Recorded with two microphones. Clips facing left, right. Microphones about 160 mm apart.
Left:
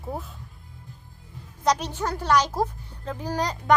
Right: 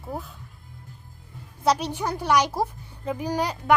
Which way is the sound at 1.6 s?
10° right (ahead or behind).